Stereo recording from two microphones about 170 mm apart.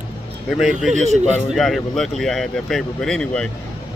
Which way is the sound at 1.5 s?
Centre (ahead or behind).